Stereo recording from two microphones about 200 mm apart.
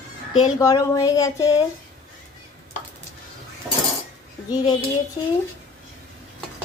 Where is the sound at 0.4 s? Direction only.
20° left (ahead or behind).